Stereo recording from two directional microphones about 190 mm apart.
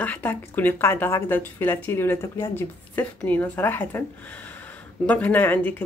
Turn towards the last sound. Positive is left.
turn(degrees=10)  # may be behind; listen again after turning